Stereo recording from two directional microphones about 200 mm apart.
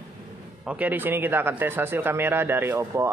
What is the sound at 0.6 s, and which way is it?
Speech, 5° right (ahead or behind).